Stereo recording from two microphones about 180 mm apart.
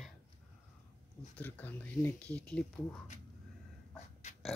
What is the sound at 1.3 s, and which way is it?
Speech, 10° left (ahead or behind).